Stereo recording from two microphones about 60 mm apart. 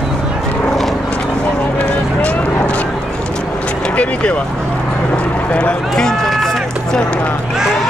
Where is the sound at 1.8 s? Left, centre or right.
Left.